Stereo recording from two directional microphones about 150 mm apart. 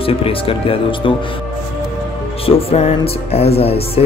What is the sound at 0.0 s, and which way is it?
Speech, 40° left (ahead or behind).